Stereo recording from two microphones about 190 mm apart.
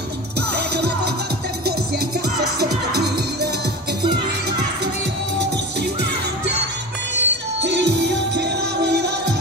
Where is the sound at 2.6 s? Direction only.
60° right (ahead or behind).